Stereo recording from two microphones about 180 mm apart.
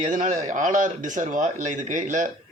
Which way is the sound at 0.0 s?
45° right (ahead or behind).